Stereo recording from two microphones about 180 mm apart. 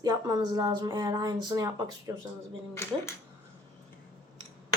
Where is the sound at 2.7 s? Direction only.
15° left (ahead or behind).